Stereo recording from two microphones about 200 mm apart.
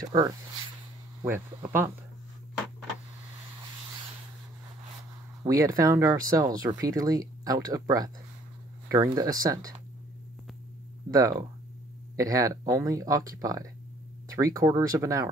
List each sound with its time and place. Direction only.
0.1 s speech: 20° right (ahead or behind)
5.4 s speech: 20° right (ahead or behind)
11.1 s speech: 15° right (ahead or behind)